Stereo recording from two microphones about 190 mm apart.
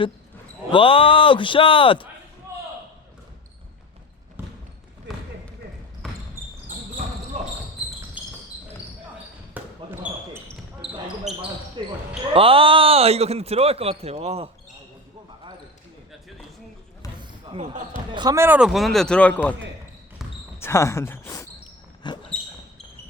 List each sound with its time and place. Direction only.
0.7 s speech: 30° left (ahead or behind)
4.4 s basketball bounce: 10° right (ahead or behind)
6.0 s basketball bounce: centre (ahead or behind)
6.7 s basketball bounce: 45° right (ahead or behind)
7.8 s a sound: 5° right (ahead or behind)
9.6 s basketball bounce: 10° right (ahead or behind)
11.8 s speech: 25° right (ahead or behind)
17.2 s basketball bounce: 25° right (ahead or behind)
18.1 s a man's voice: 20° right (ahead or behind); by 19.4 s 5° left (ahead or behind)
20.6 s speech: 15° left (ahead or behind)
22.0 s basketball bounce: 25° left (ahead or behind)